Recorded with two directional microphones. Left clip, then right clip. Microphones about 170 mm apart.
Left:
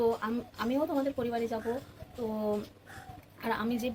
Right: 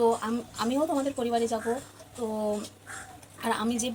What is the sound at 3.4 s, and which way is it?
Speech, 15° left (ahead or behind).